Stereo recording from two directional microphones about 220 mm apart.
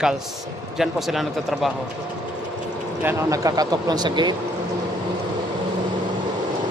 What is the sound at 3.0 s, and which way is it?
Speech, 15° right (ahead or behind).